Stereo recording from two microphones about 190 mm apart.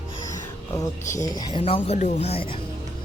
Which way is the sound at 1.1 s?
20° left (ahead or behind).